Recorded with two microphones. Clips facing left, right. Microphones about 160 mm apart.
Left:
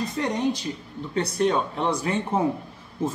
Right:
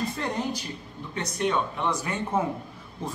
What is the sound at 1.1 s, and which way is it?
A man's voice, 35° left (ahead or behind).